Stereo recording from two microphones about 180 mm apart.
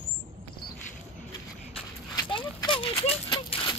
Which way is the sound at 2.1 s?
25° left (ahead or behind).